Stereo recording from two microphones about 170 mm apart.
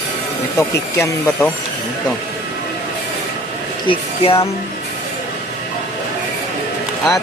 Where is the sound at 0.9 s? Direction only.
15° left (ahead or behind).